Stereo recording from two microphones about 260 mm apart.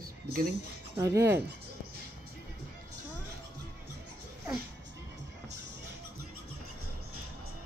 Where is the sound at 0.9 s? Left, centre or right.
Centre.